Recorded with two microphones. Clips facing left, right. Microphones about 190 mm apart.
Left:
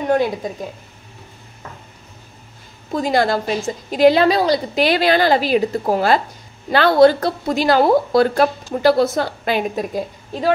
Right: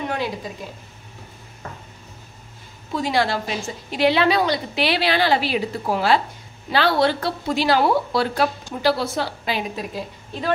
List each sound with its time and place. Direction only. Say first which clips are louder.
2.9 s a woman's voice: left 4 dB; 45° left (ahead or behind)